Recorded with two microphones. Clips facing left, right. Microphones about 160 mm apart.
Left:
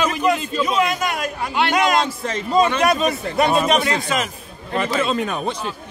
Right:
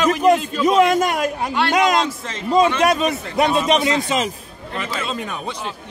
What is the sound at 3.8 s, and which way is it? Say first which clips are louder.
Speech: right 2 dB; 25° right (ahead or behind).